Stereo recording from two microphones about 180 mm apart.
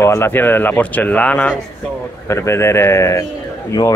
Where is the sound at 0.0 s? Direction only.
15° left (ahead or behind).